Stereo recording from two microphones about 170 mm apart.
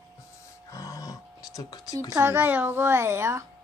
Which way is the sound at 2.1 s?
15° right (ahead or behind).